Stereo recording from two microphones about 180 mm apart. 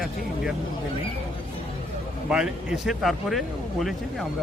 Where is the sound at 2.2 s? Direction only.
5° right (ahead or behind).